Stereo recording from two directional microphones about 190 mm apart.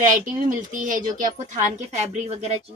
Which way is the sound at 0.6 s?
45° right (ahead or behind).